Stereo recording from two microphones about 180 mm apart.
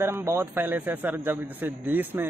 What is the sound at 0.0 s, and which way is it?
A man's voice, 15° right (ahead or behind).